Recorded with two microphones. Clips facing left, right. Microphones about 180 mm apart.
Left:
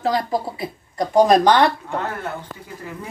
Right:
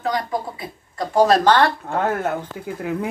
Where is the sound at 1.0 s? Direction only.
15° left (ahead or behind).